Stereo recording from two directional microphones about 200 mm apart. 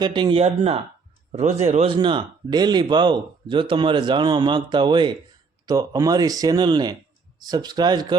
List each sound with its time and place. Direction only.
0.0 s speech: 20° right (ahead or behind)